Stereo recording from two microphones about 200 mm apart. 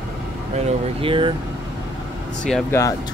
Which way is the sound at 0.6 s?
25° right (ahead or behind).